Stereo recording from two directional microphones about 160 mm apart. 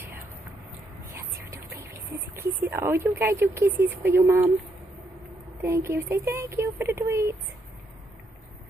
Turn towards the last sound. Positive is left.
turn(degrees=-20)  # may be behind; listen again after turning